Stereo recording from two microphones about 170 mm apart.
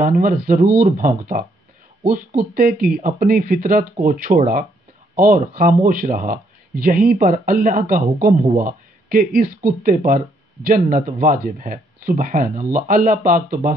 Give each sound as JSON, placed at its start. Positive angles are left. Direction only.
{"t": 0.0, "sound": "speech", "side_deg": -50}